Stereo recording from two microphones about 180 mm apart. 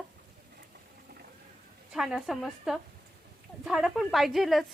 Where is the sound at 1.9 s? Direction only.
5° right (ahead or behind).